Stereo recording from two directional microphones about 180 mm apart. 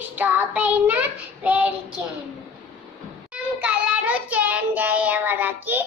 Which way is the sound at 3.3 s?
5° right (ahead or behind).